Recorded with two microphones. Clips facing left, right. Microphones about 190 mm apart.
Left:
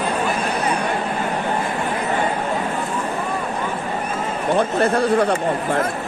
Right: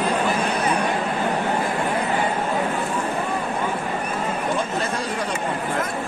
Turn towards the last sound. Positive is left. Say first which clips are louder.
# left 9 dB
turn(degrees=60)  # may be behind; listen again after turning